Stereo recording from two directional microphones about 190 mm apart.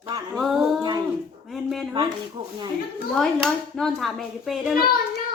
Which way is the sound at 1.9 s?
25° right (ahead or behind).